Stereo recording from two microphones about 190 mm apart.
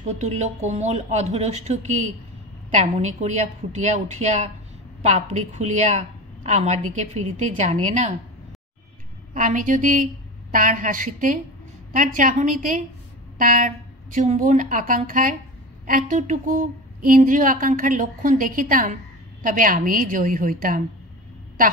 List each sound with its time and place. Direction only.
0.2 s a woman's voice: 35° right (ahead or behind)
9.3 s speech: 45° right (ahead or behind)